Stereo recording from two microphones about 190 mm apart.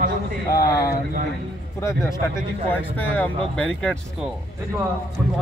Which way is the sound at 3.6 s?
5° left (ahead or behind).